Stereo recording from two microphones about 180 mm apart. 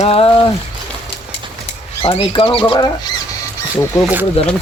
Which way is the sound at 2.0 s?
30° left (ahead or behind).